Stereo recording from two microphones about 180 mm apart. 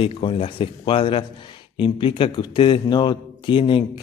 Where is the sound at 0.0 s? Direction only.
30° left (ahead or behind).